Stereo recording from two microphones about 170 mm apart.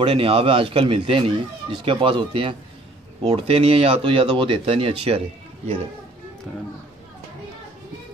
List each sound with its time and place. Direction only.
0.0 s speech: 30° right (ahead or behind)